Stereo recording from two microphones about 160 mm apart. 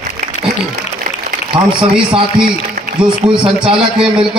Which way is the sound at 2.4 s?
5° right (ahead or behind).